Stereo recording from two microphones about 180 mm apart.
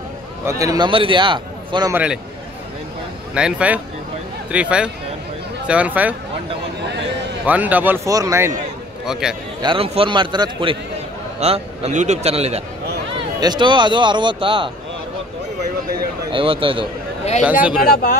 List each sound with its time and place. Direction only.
0.5 s a man's voice: 20° right (ahead or behind)
1.9 s speech: 10° right (ahead or behind)
3.3 s speech: 5° right (ahead or behind)
7.4 s speech: 10° right (ahead or behind)
9.0 s speech: 5° right (ahead or behind)
9.6 s a man's voice: 30° right (ahead or behind)
13.4 s a man's voice: 25° right (ahead or behind)
16.3 s a man's voice: 30° right (ahead or behind)
17.4 s speech: 5° right (ahead or behind)
17.8 s speech: 60° left (ahead or behind)